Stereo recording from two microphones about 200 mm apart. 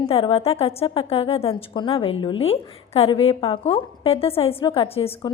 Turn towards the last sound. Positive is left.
turn(degrees=30)  # may be behind; listen again after turning